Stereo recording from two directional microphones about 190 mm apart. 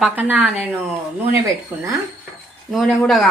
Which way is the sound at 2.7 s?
Centre (ahead or behind).